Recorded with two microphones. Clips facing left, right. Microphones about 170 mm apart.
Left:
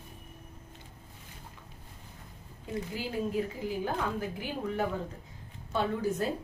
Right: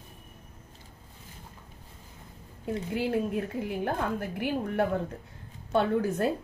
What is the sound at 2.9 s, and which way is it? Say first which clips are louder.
A woman's voice: right 4 dB; 60° right (ahead or behind).